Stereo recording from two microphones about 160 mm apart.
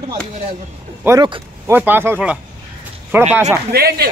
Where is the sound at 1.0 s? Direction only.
15° right (ahead or behind).